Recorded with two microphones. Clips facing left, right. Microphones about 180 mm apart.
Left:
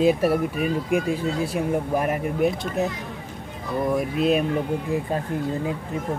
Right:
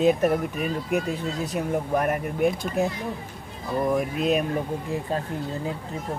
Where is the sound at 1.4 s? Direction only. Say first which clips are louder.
Left 3 dB; 10° left (ahead or behind).